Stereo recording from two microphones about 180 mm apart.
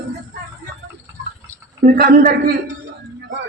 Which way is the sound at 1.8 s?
55° right (ahead or behind).